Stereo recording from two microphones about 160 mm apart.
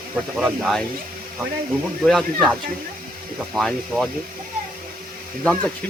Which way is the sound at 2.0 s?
Centre (ahead or behind).